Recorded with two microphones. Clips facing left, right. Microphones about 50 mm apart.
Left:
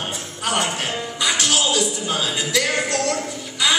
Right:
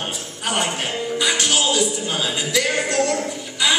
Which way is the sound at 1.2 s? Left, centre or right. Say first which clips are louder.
Even; centre.